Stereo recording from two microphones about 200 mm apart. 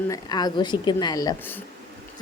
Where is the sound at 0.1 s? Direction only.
20° left (ahead or behind).